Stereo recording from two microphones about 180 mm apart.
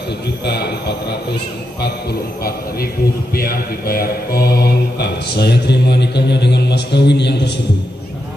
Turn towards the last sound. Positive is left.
turn(degrees=70)  # may be behind; listen again after turning